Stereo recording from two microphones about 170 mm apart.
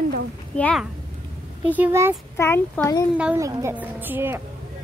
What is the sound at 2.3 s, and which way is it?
Speech, 15° left (ahead or behind).